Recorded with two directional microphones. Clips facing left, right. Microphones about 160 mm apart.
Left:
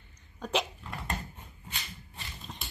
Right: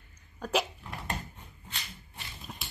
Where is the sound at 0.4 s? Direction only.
5° right (ahead or behind).